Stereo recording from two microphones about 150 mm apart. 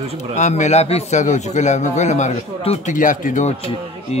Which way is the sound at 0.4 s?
50° left (ahead or behind).